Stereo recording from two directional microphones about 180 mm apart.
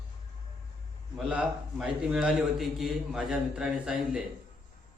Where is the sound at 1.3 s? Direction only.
5° right (ahead or behind).